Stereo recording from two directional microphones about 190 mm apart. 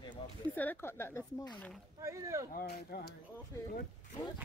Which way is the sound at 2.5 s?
55° left (ahead or behind).